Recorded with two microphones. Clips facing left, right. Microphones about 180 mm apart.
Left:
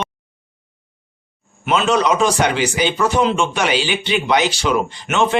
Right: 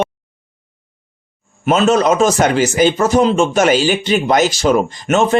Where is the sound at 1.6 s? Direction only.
40° right (ahead or behind).